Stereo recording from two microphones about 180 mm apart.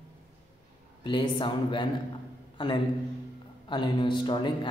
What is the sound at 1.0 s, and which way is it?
Speech, 25° left (ahead or behind).